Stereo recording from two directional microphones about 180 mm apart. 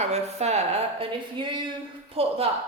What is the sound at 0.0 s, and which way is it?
Speech, 35° right (ahead or behind).